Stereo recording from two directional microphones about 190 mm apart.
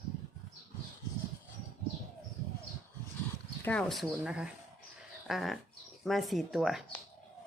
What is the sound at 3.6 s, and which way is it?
Speech, 5° left (ahead or behind).